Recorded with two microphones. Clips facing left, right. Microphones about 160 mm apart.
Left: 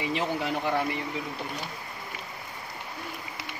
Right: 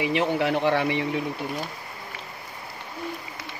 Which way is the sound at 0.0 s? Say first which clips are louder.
Right 6 dB; 75° right (ahead or behind).